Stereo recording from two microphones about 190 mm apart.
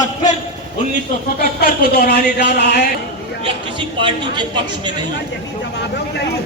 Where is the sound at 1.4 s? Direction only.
55° left (ahead or behind).